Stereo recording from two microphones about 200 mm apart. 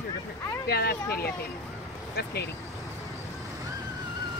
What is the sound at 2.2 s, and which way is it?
Speech, 50° left (ahead or behind).